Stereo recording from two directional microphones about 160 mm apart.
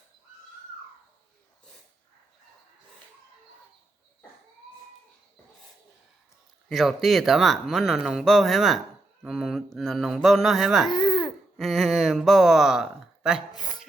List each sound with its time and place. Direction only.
6.7 s speech: centre (ahead or behind)
10.8 s babbling: 30° left (ahead or behind)
11.5 s speech: centre (ahead or behind)
13.5 s speech: 25° left (ahead or behind)